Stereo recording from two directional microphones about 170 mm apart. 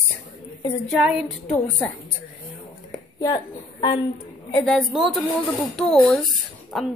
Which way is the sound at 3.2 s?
25° left (ahead or behind).